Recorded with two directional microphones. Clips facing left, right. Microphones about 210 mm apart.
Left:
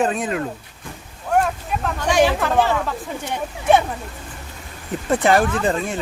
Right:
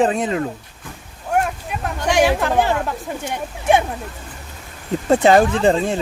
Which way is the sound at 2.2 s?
10° right (ahead or behind).